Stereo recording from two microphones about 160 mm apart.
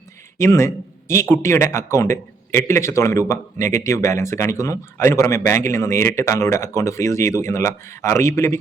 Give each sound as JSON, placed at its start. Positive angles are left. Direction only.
{"t": 0.3, "sound": "speech", "side_deg": 15}